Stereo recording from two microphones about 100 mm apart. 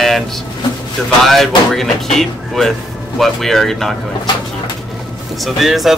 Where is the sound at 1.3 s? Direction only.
Centre (ahead or behind).